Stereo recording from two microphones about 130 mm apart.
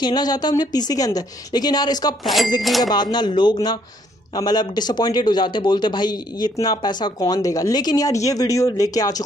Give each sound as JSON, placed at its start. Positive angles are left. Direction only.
{"t": 0.0, "sound": "a man's voice", "side_deg": 30}
{"t": 2.2, "sound": "speech", "side_deg": 0}
{"t": 2.9, "sound": "a man's voice", "side_deg": 35}